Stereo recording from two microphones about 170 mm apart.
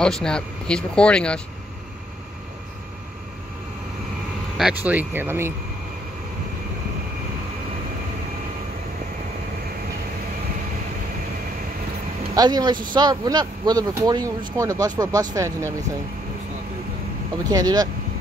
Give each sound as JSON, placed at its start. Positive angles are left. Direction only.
{"t": 0.0, "sound": "speech", "side_deg": 5}
{"t": 4.6, "sound": "speech", "side_deg": -5}
{"t": 12.4, "sound": "speech", "side_deg": -25}
{"t": 17.5, "sound": "speech", "side_deg": -20}